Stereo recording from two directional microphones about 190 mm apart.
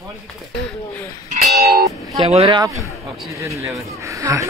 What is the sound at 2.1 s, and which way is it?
Speech, 30° right (ahead or behind).